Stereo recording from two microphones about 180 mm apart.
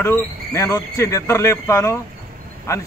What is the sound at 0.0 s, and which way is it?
Speech, 15° left (ahead or behind).